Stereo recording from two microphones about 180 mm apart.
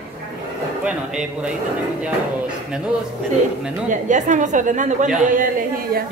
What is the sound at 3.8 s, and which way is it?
A woman's voice, 45° right (ahead or behind).